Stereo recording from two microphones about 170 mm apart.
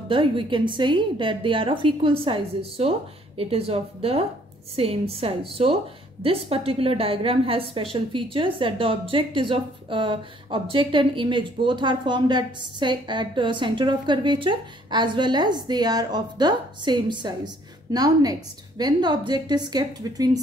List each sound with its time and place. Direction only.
0.1 s a woman's voice: 30° right (ahead or behind)